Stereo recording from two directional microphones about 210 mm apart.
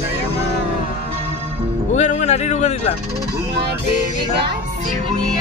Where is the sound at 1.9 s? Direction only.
35° left (ahead or behind).